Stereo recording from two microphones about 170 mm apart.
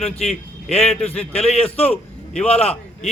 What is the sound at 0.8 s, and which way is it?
Speech, 5° left (ahead or behind).